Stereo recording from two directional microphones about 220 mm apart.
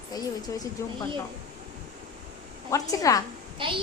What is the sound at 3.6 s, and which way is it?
Speech, 25° right (ahead or behind).